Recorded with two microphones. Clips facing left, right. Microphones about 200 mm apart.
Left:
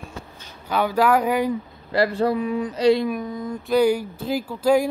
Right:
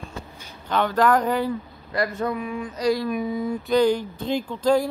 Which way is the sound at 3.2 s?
5° right (ahead or behind).